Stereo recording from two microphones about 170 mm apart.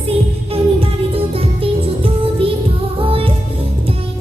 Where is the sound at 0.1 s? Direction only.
35° right (ahead or behind).